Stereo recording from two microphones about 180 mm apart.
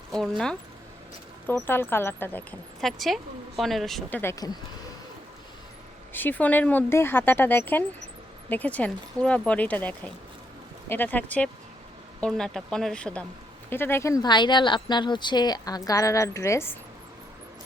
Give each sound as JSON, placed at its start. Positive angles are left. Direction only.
{"t": 0.1, "sound": "speech", "side_deg": 5}
{"t": 4.2, "sound": "speech", "side_deg": 15}
{"t": 6.1, "sound": "speech", "side_deg": 10}